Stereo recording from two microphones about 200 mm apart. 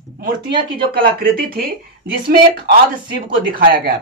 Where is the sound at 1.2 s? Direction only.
45° right (ahead or behind).